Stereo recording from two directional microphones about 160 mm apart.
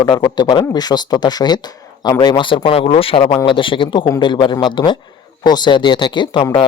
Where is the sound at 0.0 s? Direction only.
30° left (ahead or behind).